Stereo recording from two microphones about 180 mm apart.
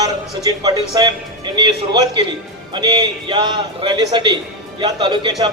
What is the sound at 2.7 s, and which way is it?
A man's voice, 25° right (ahead or behind).